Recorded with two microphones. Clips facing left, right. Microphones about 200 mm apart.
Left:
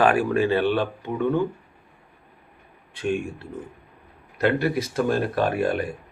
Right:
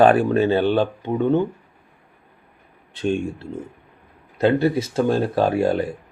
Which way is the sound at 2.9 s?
25° right (ahead or behind).